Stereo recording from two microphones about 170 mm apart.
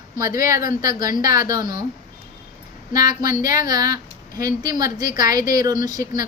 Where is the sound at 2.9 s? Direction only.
20° right (ahead or behind).